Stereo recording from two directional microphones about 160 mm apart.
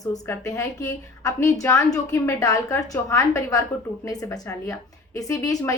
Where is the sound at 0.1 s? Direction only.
20° left (ahead or behind).